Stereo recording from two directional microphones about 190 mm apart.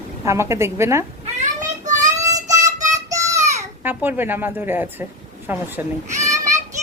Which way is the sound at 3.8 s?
10° right (ahead or behind).